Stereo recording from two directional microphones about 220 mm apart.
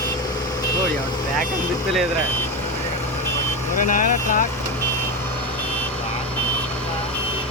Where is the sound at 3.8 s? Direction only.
35° left (ahead or behind).